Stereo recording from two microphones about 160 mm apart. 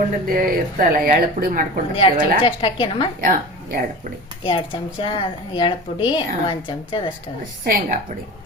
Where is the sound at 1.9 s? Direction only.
35° left (ahead or behind).